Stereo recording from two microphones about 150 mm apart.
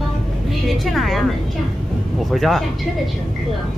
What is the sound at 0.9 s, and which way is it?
Speech, centre (ahead or behind).